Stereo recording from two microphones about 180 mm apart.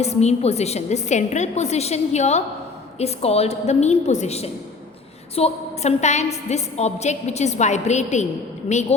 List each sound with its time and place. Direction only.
0.0 s a woman's voice: 35° left (ahead or behind)